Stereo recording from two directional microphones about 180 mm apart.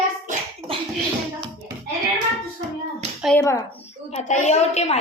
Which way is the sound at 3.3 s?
15° left (ahead or behind).